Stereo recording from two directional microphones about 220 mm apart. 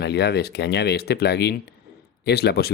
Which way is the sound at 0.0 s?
50° left (ahead or behind).